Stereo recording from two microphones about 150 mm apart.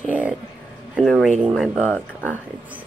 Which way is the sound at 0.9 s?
Centre (ahead or behind).